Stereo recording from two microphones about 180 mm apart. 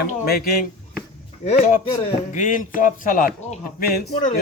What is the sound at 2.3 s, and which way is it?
Speech, 45° left (ahead or behind).